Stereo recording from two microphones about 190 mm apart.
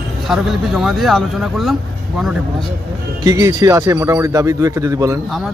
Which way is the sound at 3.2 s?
20° right (ahead or behind).